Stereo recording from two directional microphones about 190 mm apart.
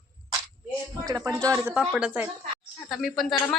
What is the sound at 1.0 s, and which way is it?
A woman's voice, 20° right (ahead or behind).